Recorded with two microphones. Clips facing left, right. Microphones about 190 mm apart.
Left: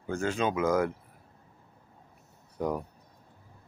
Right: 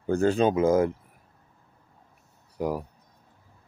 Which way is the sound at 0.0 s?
35° right (ahead or behind).